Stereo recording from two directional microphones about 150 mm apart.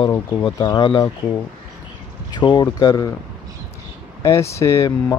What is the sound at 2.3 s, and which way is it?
Speech, 30° left (ahead or behind).